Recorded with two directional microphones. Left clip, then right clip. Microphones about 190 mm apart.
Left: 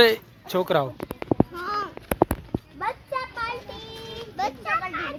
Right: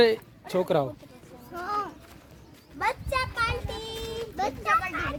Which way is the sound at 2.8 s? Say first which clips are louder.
Right 2 dB; 25° right (ahead or behind).